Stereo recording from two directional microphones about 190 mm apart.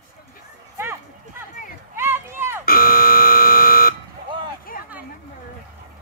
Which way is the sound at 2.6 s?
50° left (ahead or behind).